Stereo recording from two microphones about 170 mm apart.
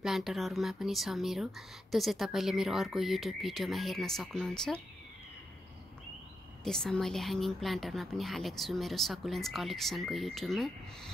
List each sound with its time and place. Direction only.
0.0 s speech: centre (ahead or behind)
6.6 s speech: 5° left (ahead or behind)